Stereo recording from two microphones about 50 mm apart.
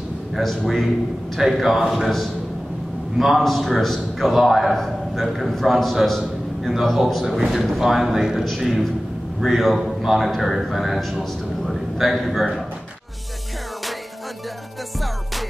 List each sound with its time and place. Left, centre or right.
0.4 s a man's voice: centre